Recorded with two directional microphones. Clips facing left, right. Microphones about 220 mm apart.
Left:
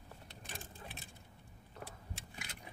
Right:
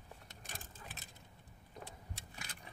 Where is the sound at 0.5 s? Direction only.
40° right (ahead or behind).